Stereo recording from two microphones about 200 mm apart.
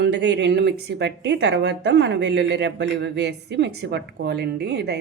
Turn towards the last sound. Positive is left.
turn(degrees=-55)  # may be behind; listen again after turning